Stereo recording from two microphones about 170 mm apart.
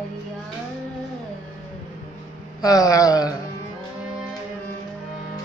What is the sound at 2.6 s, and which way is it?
Speech, 20° left (ahead or behind).